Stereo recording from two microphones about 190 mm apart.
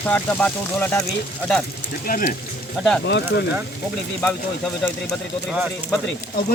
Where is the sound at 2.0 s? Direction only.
45° left (ahead or behind).